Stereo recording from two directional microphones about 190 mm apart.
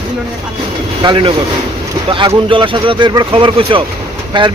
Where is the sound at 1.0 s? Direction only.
25° right (ahead or behind).